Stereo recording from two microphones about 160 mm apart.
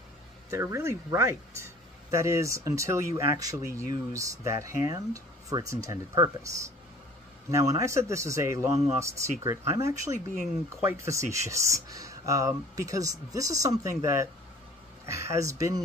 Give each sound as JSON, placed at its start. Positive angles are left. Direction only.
{"t": 0.5, "sound": "speech", "side_deg": -15}
{"t": 7.5, "sound": "speech", "side_deg": -20}